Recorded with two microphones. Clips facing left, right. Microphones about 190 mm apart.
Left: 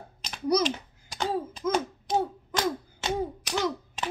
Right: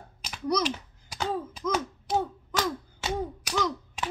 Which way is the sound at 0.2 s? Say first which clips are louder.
Left 3 dB; 10° right (ahead or behind).